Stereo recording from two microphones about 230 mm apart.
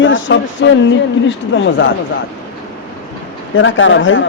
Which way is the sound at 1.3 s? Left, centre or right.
Left.